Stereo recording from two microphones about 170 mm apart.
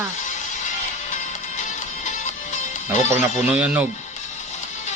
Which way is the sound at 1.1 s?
45° left (ahead or behind).